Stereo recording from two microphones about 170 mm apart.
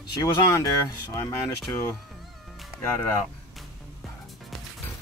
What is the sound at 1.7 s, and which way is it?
Speech, 15° left (ahead or behind).